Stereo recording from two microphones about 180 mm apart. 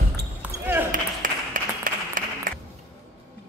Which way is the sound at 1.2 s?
50° right (ahead or behind).